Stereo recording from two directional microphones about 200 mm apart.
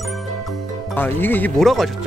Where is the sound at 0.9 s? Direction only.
10° left (ahead or behind).